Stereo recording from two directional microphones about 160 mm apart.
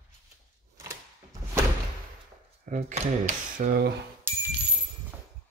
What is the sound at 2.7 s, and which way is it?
Speech, 45° right (ahead or behind).